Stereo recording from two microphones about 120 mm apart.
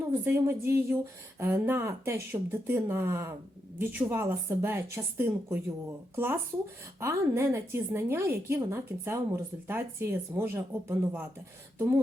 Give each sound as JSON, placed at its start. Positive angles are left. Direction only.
{"t": 0.0, "sound": "a woman's voice", "side_deg": -20}